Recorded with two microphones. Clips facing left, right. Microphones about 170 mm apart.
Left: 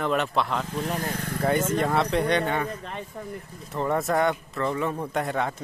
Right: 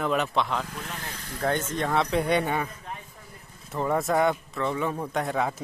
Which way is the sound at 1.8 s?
Centre (ahead or behind).